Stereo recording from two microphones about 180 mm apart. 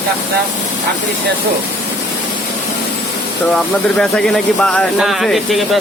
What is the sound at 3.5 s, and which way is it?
Speech, 5° left (ahead or behind).